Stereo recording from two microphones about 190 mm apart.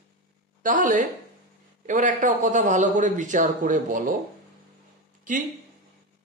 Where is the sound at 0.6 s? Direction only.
45° right (ahead or behind).